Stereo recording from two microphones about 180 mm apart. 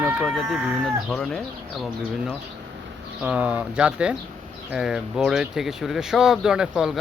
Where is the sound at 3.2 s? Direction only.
5° right (ahead or behind).